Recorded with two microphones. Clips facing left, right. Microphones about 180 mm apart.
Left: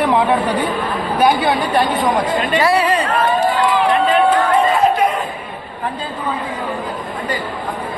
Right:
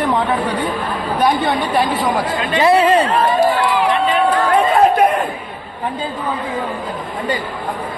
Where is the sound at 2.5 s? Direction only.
20° right (ahead or behind).